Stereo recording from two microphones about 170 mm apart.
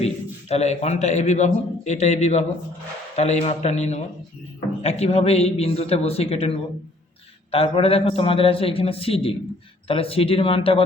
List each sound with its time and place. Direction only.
0.0 s a man's voice: 40° left (ahead or behind)
7.5 s a man's voice: 35° left (ahead or behind)